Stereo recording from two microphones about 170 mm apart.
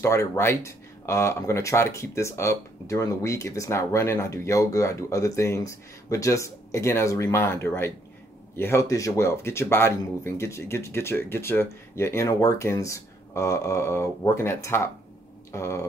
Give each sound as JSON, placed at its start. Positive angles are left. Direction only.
{"t": 0.0, "sound": "speech", "side_deg": 15}